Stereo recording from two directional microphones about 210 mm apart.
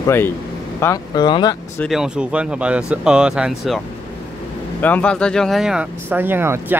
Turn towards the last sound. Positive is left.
turn(degrees=-10)  # may be behind; listen again after turning